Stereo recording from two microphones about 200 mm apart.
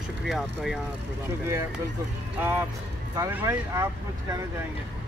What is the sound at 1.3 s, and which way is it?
Speech, 15° right (ahead or behind).